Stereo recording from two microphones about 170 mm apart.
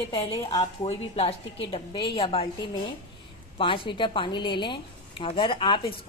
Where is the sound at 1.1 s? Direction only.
35° left (ahead or behind).